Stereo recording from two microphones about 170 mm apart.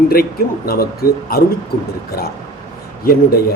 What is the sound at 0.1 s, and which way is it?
A man's voice, 65° left (ahead or behind).